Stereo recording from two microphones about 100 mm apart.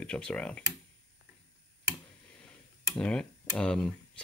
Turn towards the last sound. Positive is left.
turn(degrees=10)  # may be behind; listen again after turning